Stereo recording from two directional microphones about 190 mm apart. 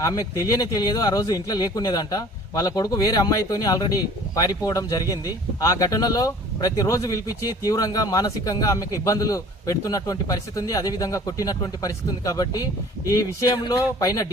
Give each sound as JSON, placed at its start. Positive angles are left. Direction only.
{"t": 0.0, "sound": "speech", "side_deg": 20}